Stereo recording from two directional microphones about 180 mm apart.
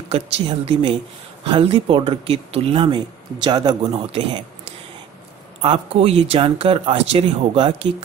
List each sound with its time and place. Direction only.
0.1 s speech: 30° right (ahead or behind)
5.6 s speech: 30° right (ahead or behind)